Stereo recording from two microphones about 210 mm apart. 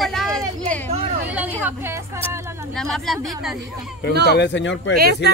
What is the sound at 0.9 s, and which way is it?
Speech, 30° right (ahead or behind).